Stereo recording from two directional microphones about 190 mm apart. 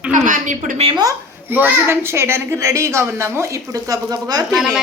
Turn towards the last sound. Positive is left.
turn(degrees=0)  # may be behind; listen again after turning